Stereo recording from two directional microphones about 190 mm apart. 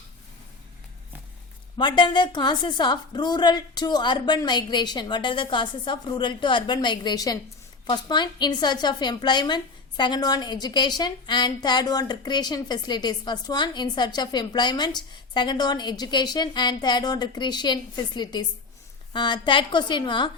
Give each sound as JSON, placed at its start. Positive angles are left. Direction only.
{"t": 1.8, "sound": "a woman's voice", "side_deg": 25}